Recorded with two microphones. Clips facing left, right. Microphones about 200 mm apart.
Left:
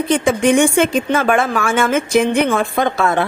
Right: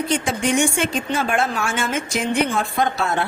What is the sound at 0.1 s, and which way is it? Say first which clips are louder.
A woman's voice: left 9 dB; 55° left (ahead or behind).